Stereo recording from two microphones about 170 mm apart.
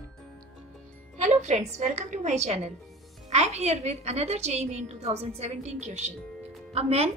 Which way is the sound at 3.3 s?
40° right (ahead or behind).